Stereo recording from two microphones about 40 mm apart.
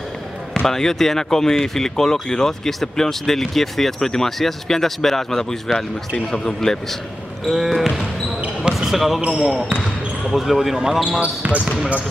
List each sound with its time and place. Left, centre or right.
0.7 s speech: centre
7.4 s speech: centre
8.7 s basketball bounce: centre
9.2 s speech: right
10.2 s speech: centre
11.1 s speech: right